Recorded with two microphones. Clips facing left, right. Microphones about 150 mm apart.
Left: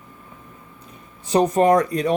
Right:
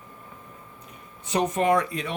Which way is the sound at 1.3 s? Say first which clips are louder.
Left 6 dB; 35° left (ahead or behind).